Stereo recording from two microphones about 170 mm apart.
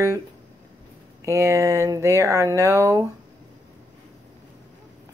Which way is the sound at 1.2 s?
15° right (ahead or behind).